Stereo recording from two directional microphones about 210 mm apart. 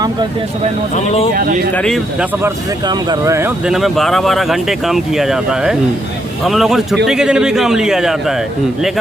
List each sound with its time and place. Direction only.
0.0 s speech: 20° right (ahead or behind)
0.9 s speech: 30° left (ahead or behind)
1.7 s speech: 5° left (ahead or behind)
2.4 s speech: 20° right (ahead or behind); by 8.4 s centre (ahead or behind)